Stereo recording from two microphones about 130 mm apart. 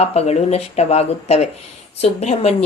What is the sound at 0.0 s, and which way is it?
Speech, 55° left (ahead or behind).